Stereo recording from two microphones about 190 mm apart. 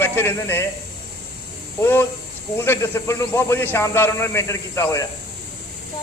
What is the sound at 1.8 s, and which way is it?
A man's voice, 10° left (ahead or behind).